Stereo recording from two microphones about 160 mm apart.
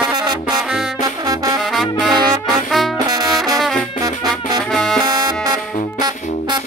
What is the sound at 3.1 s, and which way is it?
Music, 25° right (ahead or behind).